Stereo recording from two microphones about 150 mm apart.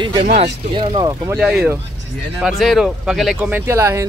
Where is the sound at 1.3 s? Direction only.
5° right (ahead or behind).